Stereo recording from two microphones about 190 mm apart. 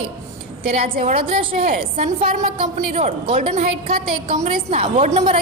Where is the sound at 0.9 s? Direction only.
45° right (ahead or behind).